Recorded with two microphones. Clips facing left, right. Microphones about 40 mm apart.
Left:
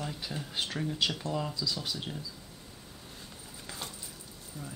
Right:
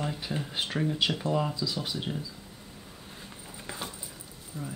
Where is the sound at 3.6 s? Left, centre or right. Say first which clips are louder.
Right 4 dB; right.